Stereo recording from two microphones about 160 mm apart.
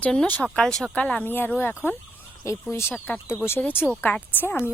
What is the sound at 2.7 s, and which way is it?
Speech, 15° left (ahead or behind).